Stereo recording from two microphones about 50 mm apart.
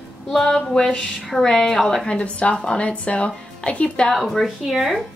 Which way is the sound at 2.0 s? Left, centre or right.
Left.